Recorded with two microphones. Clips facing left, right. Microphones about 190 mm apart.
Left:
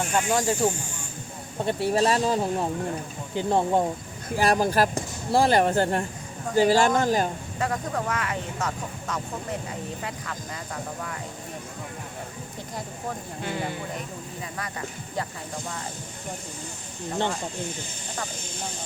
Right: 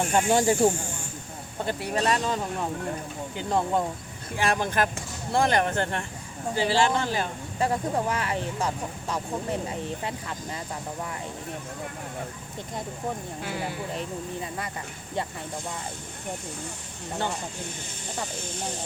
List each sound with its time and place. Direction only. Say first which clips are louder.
0.1 s speech: right 3 dB; 30° right (ahead or behind)
1.8 s speech: left 4 dB; 30° left (ahead or behind)
7.6 s speech: right 2 dB; 30° right (ahead or behind)
13.4 s speech: left 4 dB; 5° right (ahead or behind)